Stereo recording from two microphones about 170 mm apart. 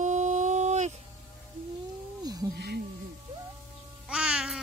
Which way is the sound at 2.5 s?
70° right (ahead or behind).